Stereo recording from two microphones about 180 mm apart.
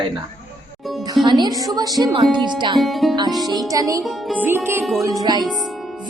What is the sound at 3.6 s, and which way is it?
Speech, 20° right (ahead or behind).